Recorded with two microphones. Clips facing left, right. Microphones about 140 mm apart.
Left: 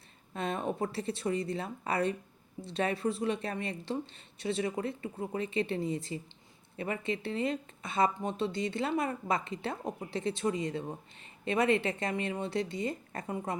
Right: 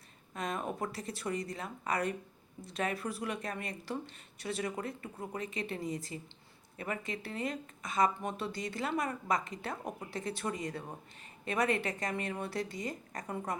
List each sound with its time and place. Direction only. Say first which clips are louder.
0.3 s speech: left 4 dB; 30° left (ahead or behind)